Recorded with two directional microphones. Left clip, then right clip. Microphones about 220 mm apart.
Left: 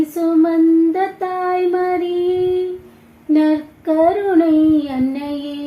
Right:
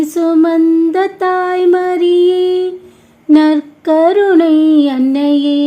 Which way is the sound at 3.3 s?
50° right (ahead or behind).